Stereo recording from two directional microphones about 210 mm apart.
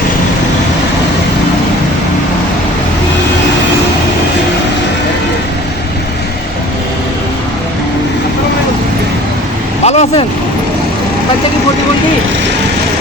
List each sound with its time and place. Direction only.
9.8 s vehicle: 30° left (ahead or behind)